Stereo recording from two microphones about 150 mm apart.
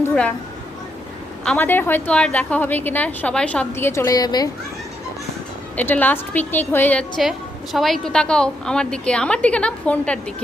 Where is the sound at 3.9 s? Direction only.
20° left (ahead or behind).